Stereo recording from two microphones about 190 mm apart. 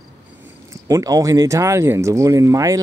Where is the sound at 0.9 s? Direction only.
20° right (ahead or behind).